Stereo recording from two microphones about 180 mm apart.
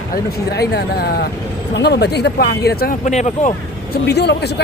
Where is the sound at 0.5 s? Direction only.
65° left (ahead or behind).